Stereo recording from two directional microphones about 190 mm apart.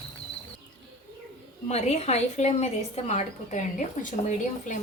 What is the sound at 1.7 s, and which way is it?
A woman's voice, 35° left (ahead or behind).